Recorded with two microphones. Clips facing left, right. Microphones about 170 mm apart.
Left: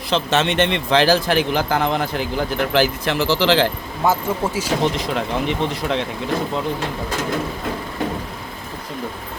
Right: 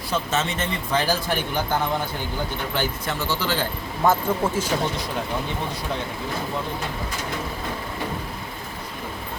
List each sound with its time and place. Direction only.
0.1 s speech: 70° left (ahead or behind); by 3.7 s 90° left
4.0 s speech: 5° left (ahead or behind)
4.8 s speech: 90° left